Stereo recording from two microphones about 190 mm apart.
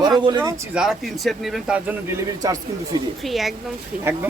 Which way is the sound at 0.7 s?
Centre (ahead or behind).